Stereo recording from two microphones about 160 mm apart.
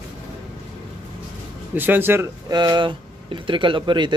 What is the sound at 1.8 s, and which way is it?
Speech, 10° right (ahead or behind).